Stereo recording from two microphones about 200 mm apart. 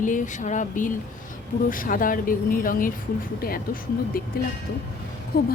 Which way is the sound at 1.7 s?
45° left (ahead or behind).